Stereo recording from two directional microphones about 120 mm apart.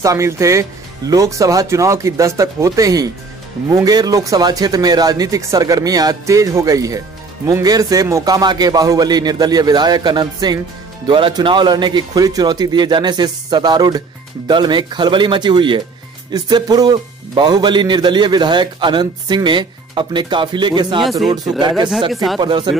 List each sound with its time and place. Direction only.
0.0 s speech: 25° right (ahead or behind)
22.1 s speech: centre (ahead or behind)
22.4 s speech: 40° right (ahead or behind)